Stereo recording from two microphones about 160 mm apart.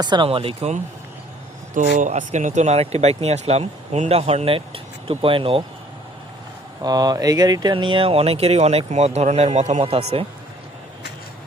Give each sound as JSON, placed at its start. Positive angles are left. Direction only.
{"t": 0.0, "sound": "speech", "side_deg": -30}
{"t": 1.7, "sound": "speech", "side_deg": -50}
{"t": 6.8, "sound": "speech", "side_deg": -25}